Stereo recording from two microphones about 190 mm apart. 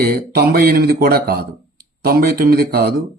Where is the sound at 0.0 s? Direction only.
50° right (ahead or behind).